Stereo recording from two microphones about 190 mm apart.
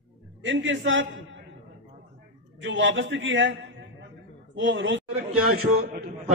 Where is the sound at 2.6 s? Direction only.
80° right.